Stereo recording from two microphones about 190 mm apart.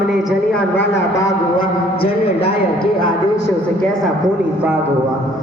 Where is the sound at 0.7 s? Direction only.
60° left (ahead or behind).